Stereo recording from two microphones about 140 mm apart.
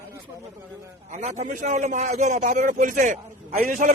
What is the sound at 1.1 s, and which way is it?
A man's voice, 60° right (ahead or behind).